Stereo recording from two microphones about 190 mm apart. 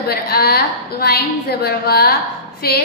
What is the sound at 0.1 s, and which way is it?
A woman's voice, 55° left (ahead or behind).